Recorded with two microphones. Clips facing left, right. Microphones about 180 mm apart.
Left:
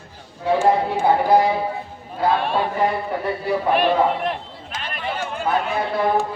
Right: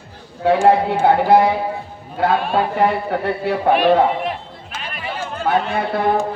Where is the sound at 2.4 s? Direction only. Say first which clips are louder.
Right 3 dB; centre (ahead or behind).